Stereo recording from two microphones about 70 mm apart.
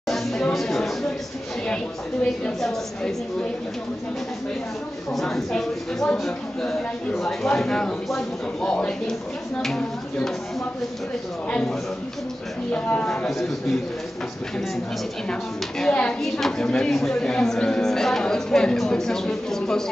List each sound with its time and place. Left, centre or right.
0.1 s a sound: centre
2.4 s speech: centre
5.1 s a man's voice: centre
12.7 s speech: centre
15.8 s speech: centre
16.2 s speech: centre